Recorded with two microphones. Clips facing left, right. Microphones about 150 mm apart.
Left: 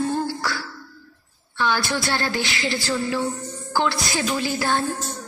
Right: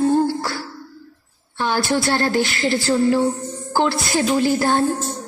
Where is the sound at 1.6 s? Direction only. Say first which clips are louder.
Right 4 dB; 45° right (ahead or behind).